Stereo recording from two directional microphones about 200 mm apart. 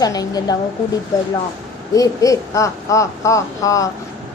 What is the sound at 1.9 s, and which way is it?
Speech, 15° left (ahead or behind).